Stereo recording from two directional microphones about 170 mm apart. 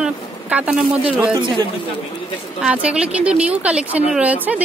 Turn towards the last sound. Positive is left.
turn(degrees=-10)  # may be behind; listen again after turning